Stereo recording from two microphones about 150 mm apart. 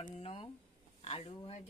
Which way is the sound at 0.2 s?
35° left (ahead or behind).